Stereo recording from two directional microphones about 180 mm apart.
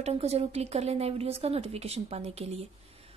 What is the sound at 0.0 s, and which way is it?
A woman's voice, 35° right (ahead or behind).